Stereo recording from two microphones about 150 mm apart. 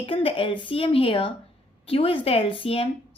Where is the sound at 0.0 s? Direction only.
40° left (ahead or behind).